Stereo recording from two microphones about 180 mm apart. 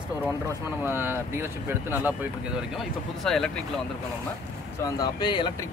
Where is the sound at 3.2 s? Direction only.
Centre (ahead or behind).